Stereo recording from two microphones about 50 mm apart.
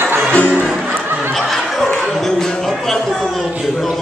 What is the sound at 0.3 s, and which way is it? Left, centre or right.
Music, left.